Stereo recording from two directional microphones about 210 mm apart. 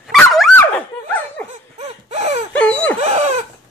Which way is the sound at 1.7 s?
30° right (ahead or behind).